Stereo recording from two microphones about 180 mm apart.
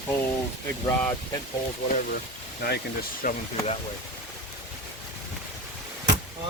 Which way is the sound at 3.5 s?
35° left (ahead or behind).